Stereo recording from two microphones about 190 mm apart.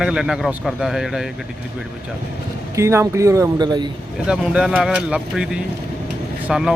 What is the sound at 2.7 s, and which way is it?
Speech, 15° right (ahead or behind).